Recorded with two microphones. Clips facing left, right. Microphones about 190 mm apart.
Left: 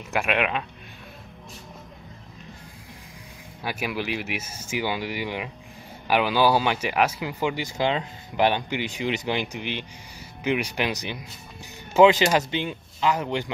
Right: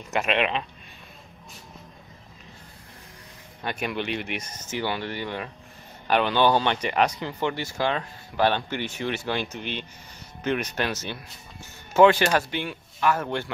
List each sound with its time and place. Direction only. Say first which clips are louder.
0.1 s speech: even; 5° left (ahead or behind)
3.6 s speech: even; 5° left (ahead or behind)